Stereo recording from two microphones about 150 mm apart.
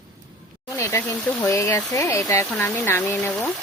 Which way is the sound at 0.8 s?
15° left (ahead or behind).